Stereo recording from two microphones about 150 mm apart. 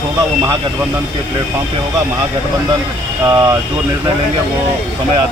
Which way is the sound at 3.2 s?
20° right (ahead or behind).